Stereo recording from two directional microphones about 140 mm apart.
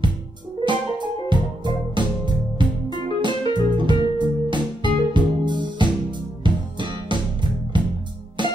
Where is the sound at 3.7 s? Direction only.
35° right (ahead or behind).